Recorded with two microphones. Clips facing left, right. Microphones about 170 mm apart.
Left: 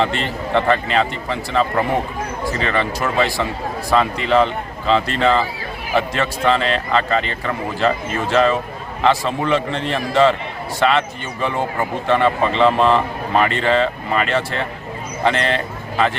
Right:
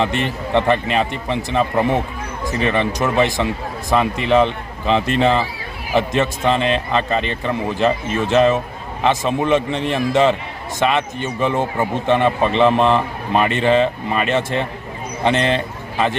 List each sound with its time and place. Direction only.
0.0 s a man's voice: 20° right (ahead or behind)